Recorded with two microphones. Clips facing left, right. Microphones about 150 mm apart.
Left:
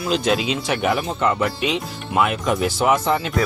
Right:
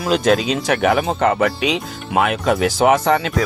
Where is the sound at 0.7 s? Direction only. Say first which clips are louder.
Right 6 dB; 65° right (ahead or behind).